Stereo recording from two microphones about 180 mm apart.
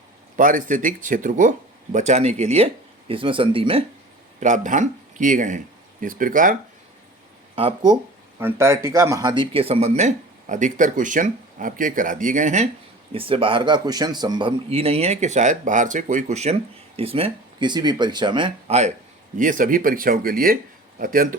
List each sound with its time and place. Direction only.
0.3 s speech: 45° right (ahead or behind); by 3.8 s 30° right (ahead or behind)
4.4 s speech: 45° right (ahead or behind)
7.5 s speech: 25° right (ahead or behind)
8.4 s speech: 15° right (ahead or behind); by 12.6 s 45° right (ahead or behind)
13.1 s speech: 30° right (ahead or behind)
19.4 s speech: 50° right (ahead or behind)